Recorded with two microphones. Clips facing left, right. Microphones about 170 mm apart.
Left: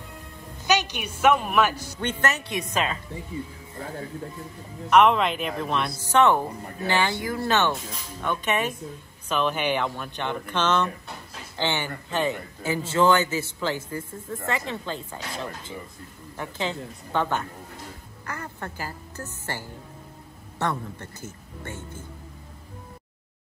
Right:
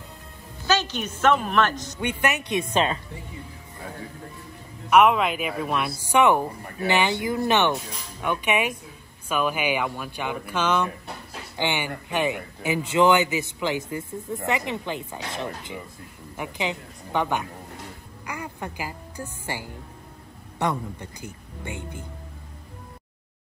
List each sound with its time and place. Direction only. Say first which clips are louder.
0.7 s a woman's voice: even; 15° left (ahead or behind)
2.0 s speech: right 2 dB; 15° right (ahead or behind); by 3.0 s 30° right (ahead or behind)
4.8 s a man's voice: even; 5° right (ahead or behind)